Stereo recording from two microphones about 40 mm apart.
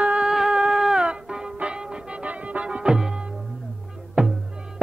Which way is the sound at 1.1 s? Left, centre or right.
Right.